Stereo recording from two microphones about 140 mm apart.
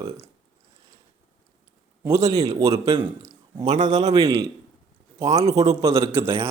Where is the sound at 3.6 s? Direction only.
60° right (ahead or behind).